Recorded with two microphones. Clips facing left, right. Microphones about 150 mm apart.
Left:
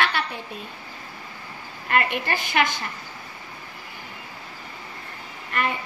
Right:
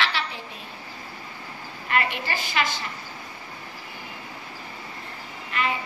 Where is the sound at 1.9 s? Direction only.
55° left (ahead or behind).